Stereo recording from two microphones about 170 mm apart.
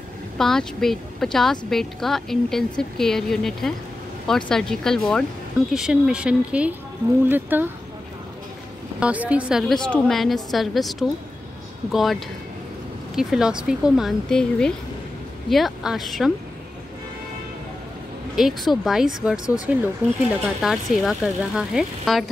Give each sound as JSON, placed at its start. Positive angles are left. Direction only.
{"t": 0.4, "sound": "a woman's voice", "side_deg": 5}
{"t": 9.0, "sound": "a woman's voice", "side_deg": -10}
{"t": 18.3, "sound": "a woman's voice", "side_deg": 0}